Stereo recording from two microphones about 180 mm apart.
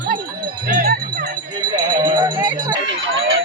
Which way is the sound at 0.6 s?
50° right (ahead or behind).